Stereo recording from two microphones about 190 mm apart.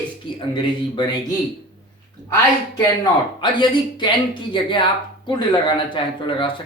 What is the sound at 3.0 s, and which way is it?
Speech, 25° left (ahead or behind).